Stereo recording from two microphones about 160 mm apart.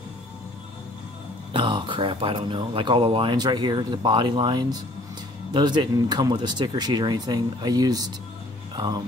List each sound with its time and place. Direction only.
1.5 s speech: 30° right (ahead or behind)